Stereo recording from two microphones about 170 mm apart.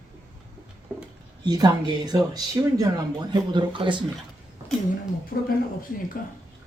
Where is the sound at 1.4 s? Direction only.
25° right (ahead or behind).